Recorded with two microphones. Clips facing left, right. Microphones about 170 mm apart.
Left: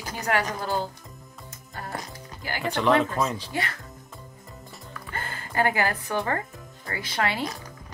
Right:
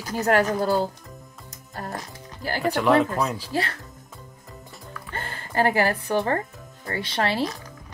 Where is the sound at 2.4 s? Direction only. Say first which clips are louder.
Right 5 dB; 40° right (ahead or behind).